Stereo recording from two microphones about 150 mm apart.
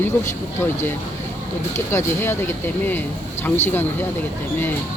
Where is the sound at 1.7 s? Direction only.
15° left (ahead or behind).